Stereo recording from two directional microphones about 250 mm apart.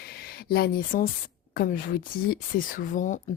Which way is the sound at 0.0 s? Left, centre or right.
Left.